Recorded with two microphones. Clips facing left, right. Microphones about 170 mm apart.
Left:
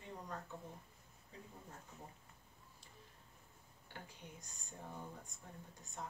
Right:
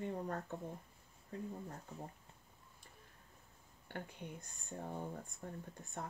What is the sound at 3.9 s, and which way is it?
Speech, 55° right (ahead or behind).